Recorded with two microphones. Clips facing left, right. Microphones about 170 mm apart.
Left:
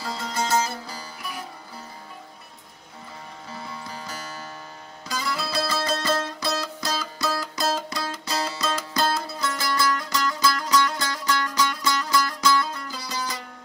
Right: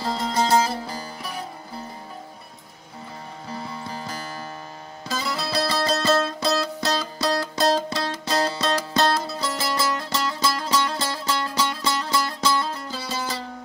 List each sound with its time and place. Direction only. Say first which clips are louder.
0.0 s music: right 5 dB; 30° right (ahead or behind)
3.5 s music: right 4 dB; 25° right (ahead or behind)
5.2 s music: right 2 dB; 30° right (ahead or behind)